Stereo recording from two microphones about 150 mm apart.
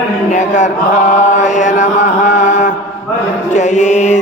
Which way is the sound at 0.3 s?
55° left (ahead or behind).